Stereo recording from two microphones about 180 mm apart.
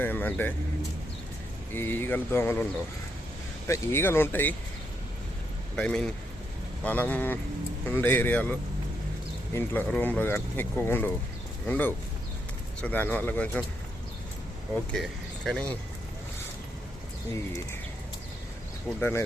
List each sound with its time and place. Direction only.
0.0 s speech: 10° left (ahead or behind)
1.7 s speech: 10° left (ahead or behind)
3.7 s speech: 15° left (ahead or behind)
5.7 s speech: 5° left (ahead or behind)
14.9 s speech: centre (ahead or behind)
17.3 s speech: 15° left (ahead or behind)
18.9 s speech: 10° left (ahead or behind)